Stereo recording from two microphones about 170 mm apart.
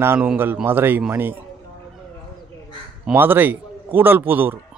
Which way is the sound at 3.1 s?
10° right (ahead or behind).